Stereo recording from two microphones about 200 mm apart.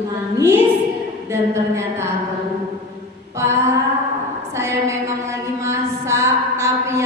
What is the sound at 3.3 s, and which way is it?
Speech, 15° right (ahead or behind).